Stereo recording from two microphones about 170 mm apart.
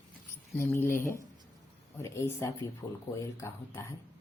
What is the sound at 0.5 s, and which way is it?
Speech, 15° left (ahead or behind).